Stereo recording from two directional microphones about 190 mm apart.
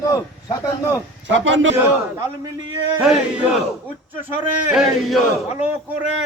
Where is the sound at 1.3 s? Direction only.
80° right.